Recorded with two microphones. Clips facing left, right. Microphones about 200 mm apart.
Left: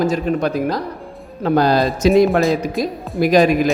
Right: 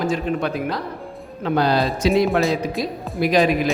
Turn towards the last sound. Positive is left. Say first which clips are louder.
# left 4 dB
turn(degrees=45)  # may be behind; listen again after turning